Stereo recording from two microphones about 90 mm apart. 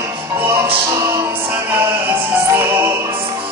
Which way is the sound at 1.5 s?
20° right (ahead or behind).